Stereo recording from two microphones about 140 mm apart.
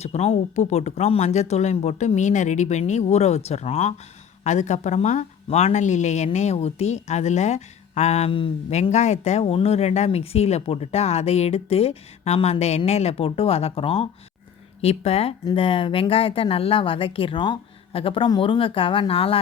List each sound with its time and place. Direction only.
0.0 s speech: 50° left (ahead or behind)
8.7 s speech: 55° left (ahead or behind)